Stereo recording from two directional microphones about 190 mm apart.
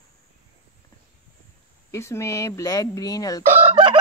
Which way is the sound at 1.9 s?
15° left (ahead or behind).